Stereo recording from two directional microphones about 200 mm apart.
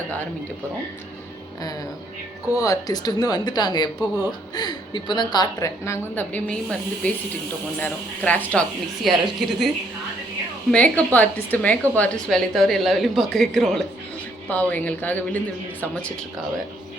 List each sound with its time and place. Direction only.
2.6 s a woman's voice: 15° left (ahead or behind); by 9.6 s centre (ahead or behind)
10.7 s a woman's voice: 5° left (ahead or behind)